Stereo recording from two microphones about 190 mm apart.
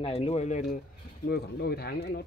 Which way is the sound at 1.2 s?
60° left (ahead or behind).